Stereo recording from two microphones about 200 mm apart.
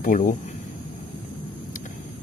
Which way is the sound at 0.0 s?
40° left (ahead or behind).